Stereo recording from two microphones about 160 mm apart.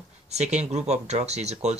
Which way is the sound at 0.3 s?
45° right (ahead or behind).